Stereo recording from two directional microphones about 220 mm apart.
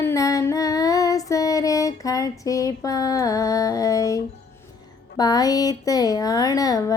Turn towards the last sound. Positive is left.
turn(degrees=15)  # may be behind; listen again after turning